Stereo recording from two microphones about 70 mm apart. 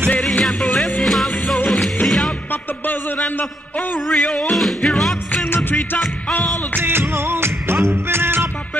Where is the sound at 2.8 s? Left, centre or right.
Left.